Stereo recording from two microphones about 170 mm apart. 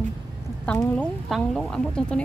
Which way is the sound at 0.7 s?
5° left (ahead or behind).